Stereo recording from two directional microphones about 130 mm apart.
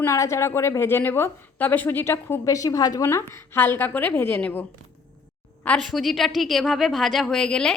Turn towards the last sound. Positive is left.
turn(degrees=5)  # may be behind; listen again after turning